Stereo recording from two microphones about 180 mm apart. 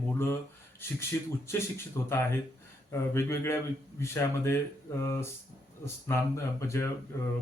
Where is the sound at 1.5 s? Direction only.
15° left (ahead or behind).